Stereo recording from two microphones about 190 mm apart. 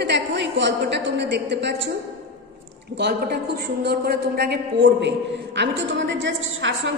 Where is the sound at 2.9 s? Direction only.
60° right (ahead or behind).